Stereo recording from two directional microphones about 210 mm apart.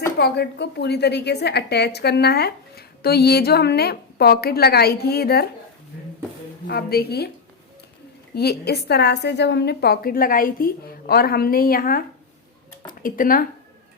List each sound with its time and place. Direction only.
0.2 s a woman's voice: 50° left (ahead or behind)
6.7 s a woman's voice: 50° left (ahead or behind)
8.4 s a woman's voice: 50° left (ahead or behind)